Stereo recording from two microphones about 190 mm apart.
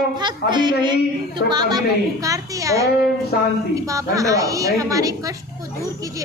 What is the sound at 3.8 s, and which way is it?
A woman's voice, 15° right (ahead or behind).